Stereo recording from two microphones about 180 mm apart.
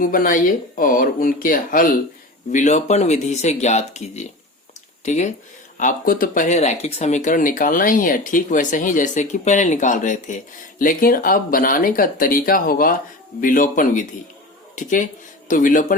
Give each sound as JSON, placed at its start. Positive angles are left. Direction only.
{"t": 0.0, "sound": "speech", "side_deg": 50}